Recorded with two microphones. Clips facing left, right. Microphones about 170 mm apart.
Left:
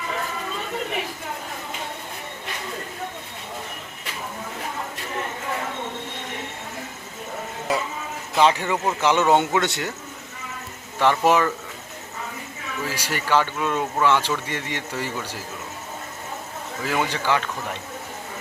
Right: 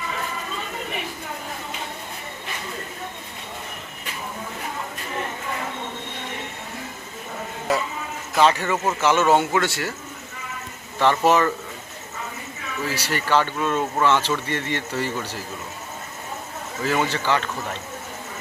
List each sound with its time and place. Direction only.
8.4 s speech: 15° left (ahead or behind)
11.0 s speech: 10° left (ahead or behind)
12.9 s speech: 10° left (ahead or behind)
16.8 s speech: 10° left (ahead or behind)